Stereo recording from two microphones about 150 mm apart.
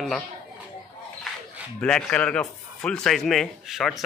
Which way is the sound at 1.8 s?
5° left (ahead or behind).